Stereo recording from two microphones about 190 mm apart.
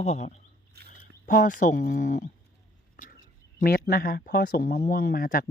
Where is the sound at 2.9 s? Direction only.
45° left (ahead or behind).